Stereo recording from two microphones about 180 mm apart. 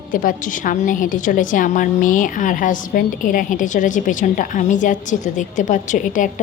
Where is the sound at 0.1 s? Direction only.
50° left (ahead or behind).